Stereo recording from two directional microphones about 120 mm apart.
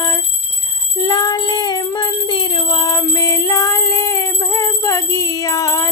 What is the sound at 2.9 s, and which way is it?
Music, 25° left (ahead or behind).